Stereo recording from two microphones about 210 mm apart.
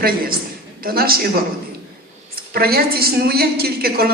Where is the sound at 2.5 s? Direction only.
45° right (ahead or behind).